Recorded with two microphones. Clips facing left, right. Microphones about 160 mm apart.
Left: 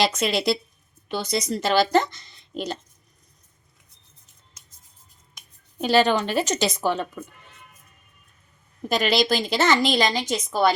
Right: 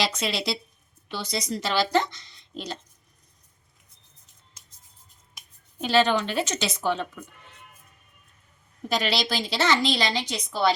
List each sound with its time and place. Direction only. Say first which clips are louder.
0.0 s a woman's voice: left 5 dB; 50° left (ahead or behind)
5.8 s a woman's voice: left 2 dB; 40° left (ahead or behind)
8.9 s a woman's voice: left 5 dB; 50° left (ahead or behind)